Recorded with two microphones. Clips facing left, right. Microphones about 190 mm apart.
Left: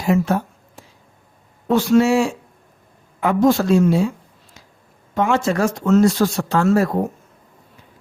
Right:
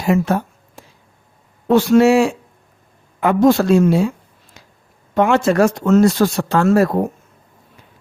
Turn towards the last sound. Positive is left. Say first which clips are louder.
# right 3 dB
turn(degrees=-60)  # may be behind; listen again after turning